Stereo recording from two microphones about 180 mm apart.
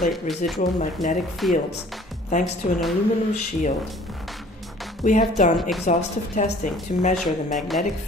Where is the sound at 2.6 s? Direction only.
40° left (ahead or behind).